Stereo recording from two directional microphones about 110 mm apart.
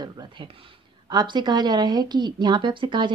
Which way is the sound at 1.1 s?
45° right (ahead or behind).